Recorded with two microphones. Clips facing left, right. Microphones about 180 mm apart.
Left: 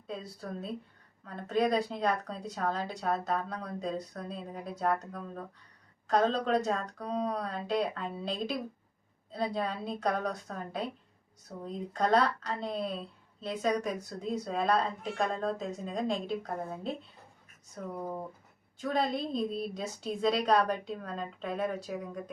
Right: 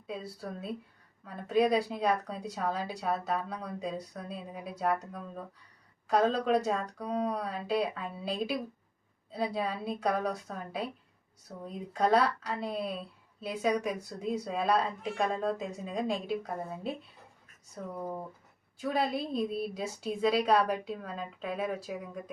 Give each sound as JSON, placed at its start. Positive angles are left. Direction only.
{"t": 0.1, "sound": "a woman's voice", "side_deg": -5}